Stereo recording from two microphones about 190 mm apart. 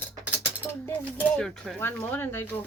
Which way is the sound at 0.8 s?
5° left (ahead or behind).